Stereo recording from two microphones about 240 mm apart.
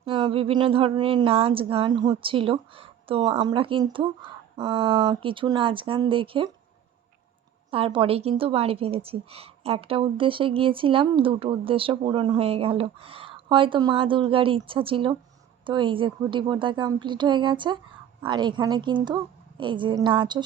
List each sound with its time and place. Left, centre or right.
0.0 s a woman's voice: right
7.7 s a woman's voice: right